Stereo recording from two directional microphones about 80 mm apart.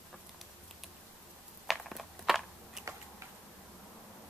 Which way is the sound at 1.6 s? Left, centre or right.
Centre.